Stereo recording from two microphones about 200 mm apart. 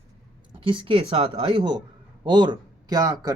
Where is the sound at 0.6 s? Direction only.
25° right (ahead or behind).